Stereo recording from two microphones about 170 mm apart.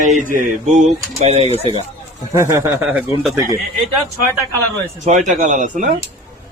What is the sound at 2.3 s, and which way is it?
Speech, 20° right (ahead or behind).